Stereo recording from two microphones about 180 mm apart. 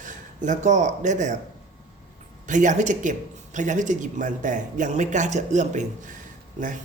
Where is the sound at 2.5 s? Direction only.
45° right (ahead or behind).